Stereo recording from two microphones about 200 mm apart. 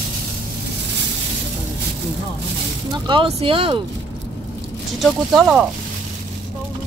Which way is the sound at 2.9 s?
25° right (ahead or behind).